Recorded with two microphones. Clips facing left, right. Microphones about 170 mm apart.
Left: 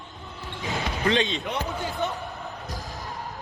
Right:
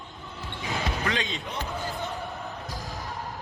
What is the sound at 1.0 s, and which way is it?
Speech, 25° left (ahead or behind).